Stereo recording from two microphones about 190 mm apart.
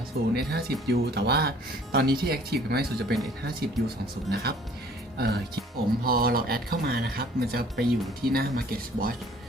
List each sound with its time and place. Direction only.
0.3 s speech: 55° right (ahead or behind)